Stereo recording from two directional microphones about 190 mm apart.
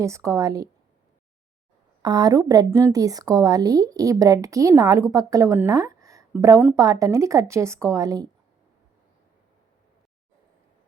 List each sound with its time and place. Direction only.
0.0 s a woman's voice: 15° right (ahead or behind)
2.0 s a woman's voice: 20° right (ahead or behind)